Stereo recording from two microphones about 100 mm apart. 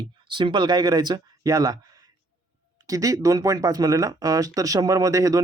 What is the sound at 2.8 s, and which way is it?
Speech, 35° right (ahead or behind).